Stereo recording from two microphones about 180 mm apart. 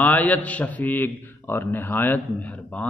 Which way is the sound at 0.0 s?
10° left (ahead or behind).